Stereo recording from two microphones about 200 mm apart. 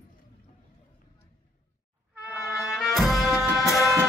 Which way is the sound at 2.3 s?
Centre (ahead or behind).